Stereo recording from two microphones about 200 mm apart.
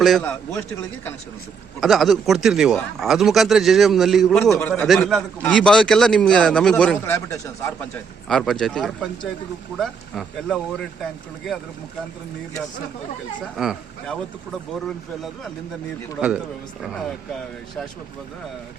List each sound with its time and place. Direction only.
0.0 s a man's voice: 5° left (ahead or behind)
1.8 s a man's voice: centre (ahead or behind)
13.6 s a man's voice: centre (ahead or behind)